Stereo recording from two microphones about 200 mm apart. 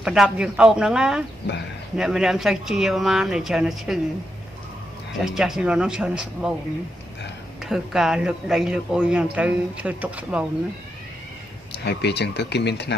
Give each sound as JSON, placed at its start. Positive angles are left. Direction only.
{"t": 0.0, "sound": "speech", "side_deg": -5}
{"t": 5.2, "sound": "speech", "side_deg": 0}
{"t": 7.6, "sound": "speech", "side_deg": 0}
{"t": 11.7, "sound": "speech", "side_deg": 55}